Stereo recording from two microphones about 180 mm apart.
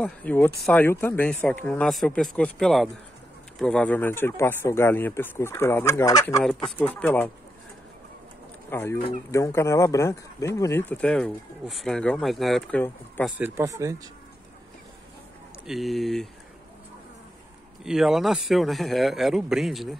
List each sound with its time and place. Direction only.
0.0 s speech: 10° left (ahead or behind)
8.6 s speech: 15° left (ahead or behind)
13.2 s speech: 10° right (ahead or behind)
15.6 s speech: centre (ahead or behind)
17.8 s speech: centre (ahead or behind)